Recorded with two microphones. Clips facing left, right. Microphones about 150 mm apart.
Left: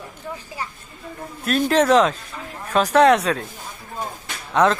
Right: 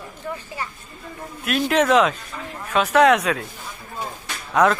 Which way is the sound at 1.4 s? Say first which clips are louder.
Left 2 dB; 35° left (ahead or behind).